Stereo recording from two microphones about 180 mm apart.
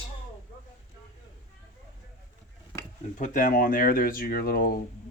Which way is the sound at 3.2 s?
45° left (ahead or behind).